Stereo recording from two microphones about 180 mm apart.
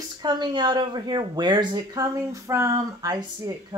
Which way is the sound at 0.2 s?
25° right (ahead or behind).